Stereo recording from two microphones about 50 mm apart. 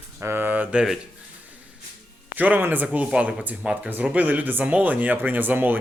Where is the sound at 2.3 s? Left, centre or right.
Right.